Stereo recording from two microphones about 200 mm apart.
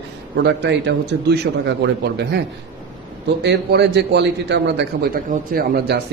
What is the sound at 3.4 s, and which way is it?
A man's voice, 55° right (ahead or behind).